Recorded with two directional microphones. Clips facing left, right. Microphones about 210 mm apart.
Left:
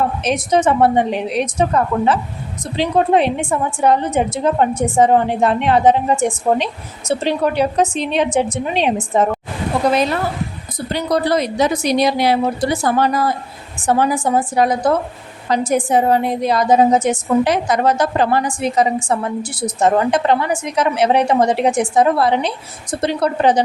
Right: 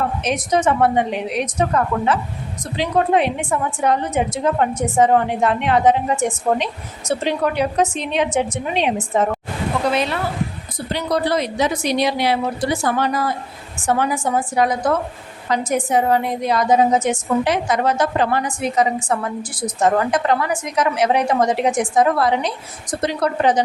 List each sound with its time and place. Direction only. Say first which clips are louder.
0.2 s a woman's voice: left 3 dB; 30° left (ahead or behind)